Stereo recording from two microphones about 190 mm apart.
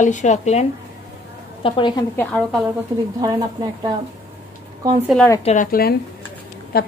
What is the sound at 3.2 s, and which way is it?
Speech, 20° right (ahead or behind).